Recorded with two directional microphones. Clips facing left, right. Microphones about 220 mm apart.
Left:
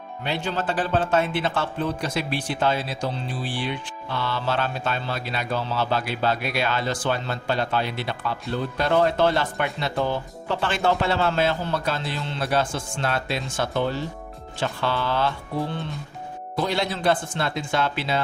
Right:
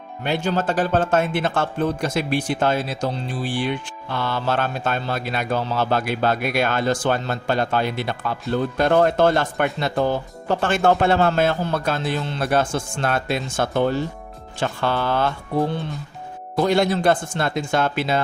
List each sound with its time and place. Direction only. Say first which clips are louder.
0.3 s a man's voice: right 5 dB; 45° right (ahead or behind)
16.6 s a man's voice: right 7 dB; 50° right (ahead or behind)